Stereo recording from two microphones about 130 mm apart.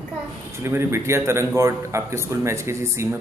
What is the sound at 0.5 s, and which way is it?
A man's voice, 20° right (ahead or behind).